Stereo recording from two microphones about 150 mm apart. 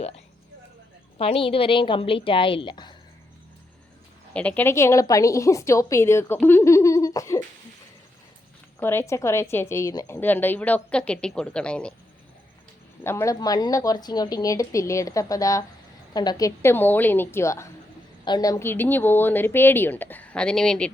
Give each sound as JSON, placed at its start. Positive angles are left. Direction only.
{"t": 1.2, "sound": "a woman's voice", "side_deg": 40}
{"t": 4.4, "sound": "a woman's voice", "side_deg": 10}
{"t": 8.8, "sound": "speech", "side_deg": 15}
{"t": 13.1, "sound": "a woman's voice", "side_deg": 20}
{"t": 16.6, "sound": "speech", "side_deg": 15}